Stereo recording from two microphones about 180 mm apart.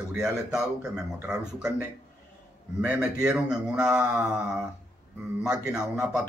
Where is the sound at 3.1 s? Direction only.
5° right (ahead or behind).